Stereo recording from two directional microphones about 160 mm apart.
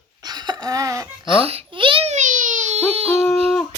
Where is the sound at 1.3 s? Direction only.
35° right (ahead or behind).